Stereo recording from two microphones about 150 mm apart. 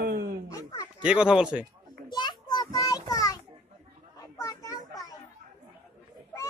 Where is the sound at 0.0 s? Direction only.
90° right.